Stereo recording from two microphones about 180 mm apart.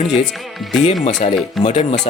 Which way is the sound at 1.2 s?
35° left (ahead or behind).